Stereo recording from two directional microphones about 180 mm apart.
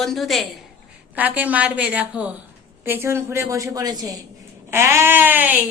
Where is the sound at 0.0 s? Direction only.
Centre (ahead or behind).